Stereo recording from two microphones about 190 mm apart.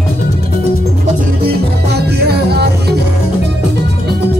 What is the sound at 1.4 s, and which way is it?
Music, 55° right (ahead or behind).